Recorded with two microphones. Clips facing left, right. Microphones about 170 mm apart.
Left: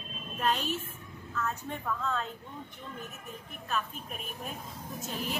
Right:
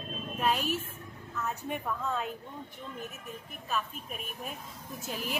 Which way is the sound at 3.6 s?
5° right (ahead or behind).